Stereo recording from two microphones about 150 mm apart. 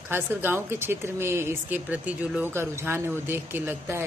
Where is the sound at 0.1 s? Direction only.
15° right (ahead or behind).